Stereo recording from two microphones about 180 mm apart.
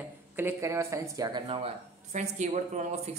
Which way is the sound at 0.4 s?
15° right (ahead or behind).